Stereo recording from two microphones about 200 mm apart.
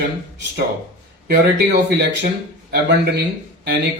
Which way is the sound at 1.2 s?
55° right (ahead or behind).